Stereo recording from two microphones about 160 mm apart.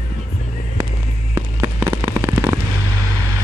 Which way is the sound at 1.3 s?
15° right (ahead or behind).